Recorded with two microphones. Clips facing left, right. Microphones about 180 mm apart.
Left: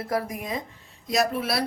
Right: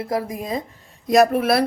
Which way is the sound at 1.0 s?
55° right (ahead or behind).